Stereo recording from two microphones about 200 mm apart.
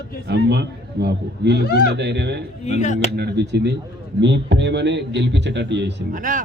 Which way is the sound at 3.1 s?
55° right (ahead or behind).